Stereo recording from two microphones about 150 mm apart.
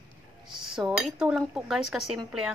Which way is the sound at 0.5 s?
5° right (ahead or behind).